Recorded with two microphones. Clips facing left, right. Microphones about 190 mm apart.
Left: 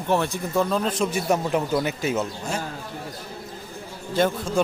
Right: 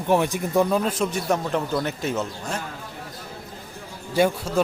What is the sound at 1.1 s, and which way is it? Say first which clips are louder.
A man's voice: left 1 dB; 5° left (ahead or behind).